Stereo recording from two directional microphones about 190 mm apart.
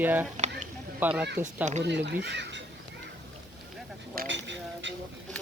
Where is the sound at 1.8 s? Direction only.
65° right (ahead or behind).